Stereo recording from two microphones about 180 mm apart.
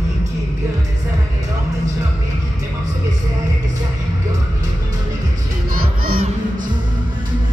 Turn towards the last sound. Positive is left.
turn(degrees=-55)  # may be behind; listen again after turning